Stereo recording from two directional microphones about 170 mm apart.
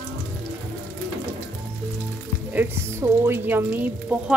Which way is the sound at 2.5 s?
15° right (ahead or behind).